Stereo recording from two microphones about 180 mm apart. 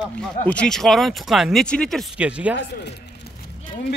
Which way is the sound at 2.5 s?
70° left (ahead or behind).